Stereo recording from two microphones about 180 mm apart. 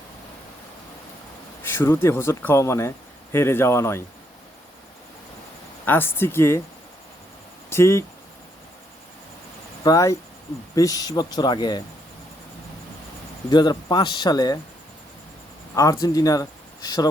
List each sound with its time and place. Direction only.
1.6 s speech: 10° left (ahead or behind)
5.8 s speech: 10° left (ahead or behind)
7.7 s speech: 15° left (ahead or behind)
9.8 s speech: 20° left (ahead or behind)
13.5 s speech: 25° left (ahead or behind)
15.7 s speech: 20° left (ahead or behind)